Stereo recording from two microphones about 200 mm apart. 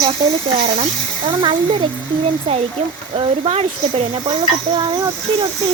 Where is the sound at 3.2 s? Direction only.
30° right (ahead or behind).